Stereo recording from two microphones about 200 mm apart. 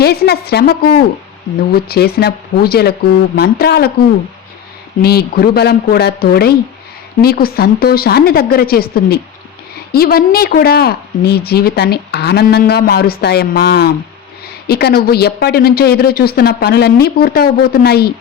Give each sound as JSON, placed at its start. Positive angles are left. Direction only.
{"t": 0.0, "sound": "a woman's voice", "side_deg": 50}
{"t": 5.0, "sound": "a woman's voice", "side_deg": 50}